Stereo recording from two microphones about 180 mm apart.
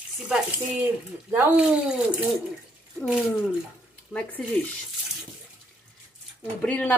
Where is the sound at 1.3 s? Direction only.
5° right (ahead or behind).